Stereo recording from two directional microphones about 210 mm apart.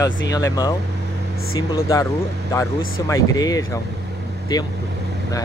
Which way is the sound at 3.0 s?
15° left (ahead or behind).